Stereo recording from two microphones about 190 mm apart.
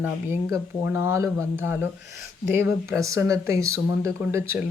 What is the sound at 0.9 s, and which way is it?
Speech, 15° right (ahead or behind).